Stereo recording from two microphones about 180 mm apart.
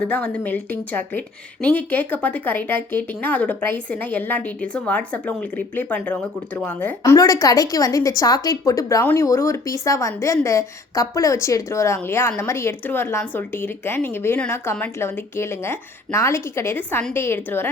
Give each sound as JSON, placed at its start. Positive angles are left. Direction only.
{"t": 0.0, "sound": "speech", "side_deg": 5}